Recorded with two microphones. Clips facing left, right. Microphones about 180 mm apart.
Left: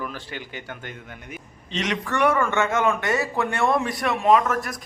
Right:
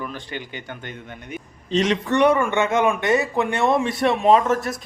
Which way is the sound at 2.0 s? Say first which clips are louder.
Right 1 dB; 20° right (ahead or behind).